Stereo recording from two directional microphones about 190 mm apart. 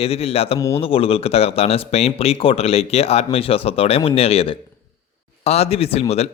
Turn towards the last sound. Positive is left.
turn(degrees=35)  # may be behind; listen again after turning